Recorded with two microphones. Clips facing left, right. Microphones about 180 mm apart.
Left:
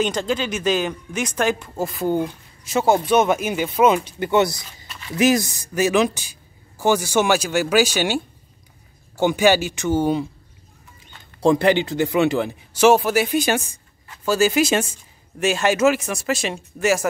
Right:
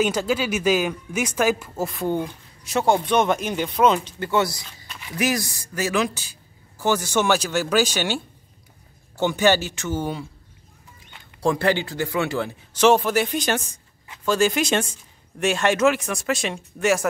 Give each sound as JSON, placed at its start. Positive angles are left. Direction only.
{"t": 0.0, "sound": "speech", "side_deg": -5}
{"t": 11.4, "sound": "speech", "side_deg": 20}